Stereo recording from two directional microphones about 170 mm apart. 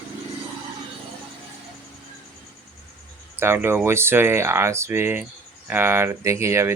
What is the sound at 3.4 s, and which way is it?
Speech, 15° right (ahead or behind).